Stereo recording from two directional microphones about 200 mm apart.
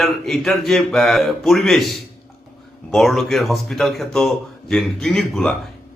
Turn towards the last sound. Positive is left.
turn(degrees=0)  # may be behind; listen again after turning